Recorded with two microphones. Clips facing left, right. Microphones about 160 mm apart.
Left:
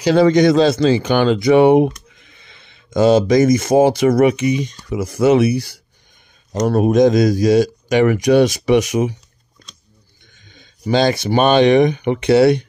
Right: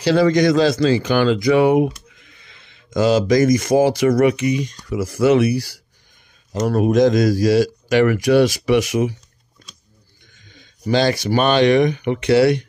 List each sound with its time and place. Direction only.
0.0 s speech: 20° left (ahead or behind)
10.5 s speech: 20° left (ahead or behind)